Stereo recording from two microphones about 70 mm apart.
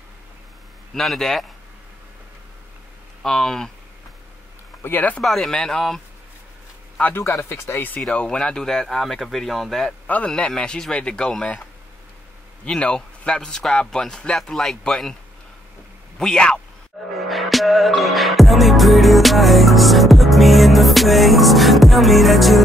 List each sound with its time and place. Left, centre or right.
0.9 s speech: centre
3.2 s speech: centre
4.8 s speech: left
5.2 s speech: centre
7.2 s speech: left
8.1 s speech: centre
10.0 s speech: centre
12.6 s speech: centre
16.2 s speech: centre
17.3 s music: centre